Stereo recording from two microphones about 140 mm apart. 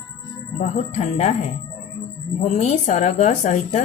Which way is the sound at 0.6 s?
50° left (ahead or behind).